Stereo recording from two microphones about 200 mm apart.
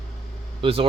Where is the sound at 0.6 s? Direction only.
30° right (ahead or behind).